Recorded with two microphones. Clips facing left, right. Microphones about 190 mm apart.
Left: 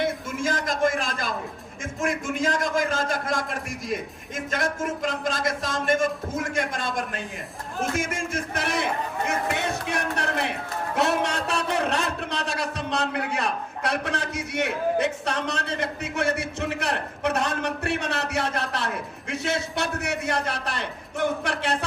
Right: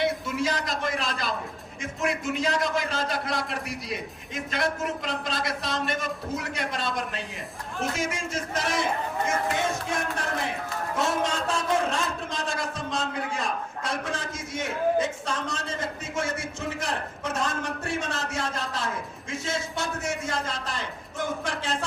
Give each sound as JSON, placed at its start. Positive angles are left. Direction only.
{"t": 0.0, "sound": "a man's voice", "side_deg": 50}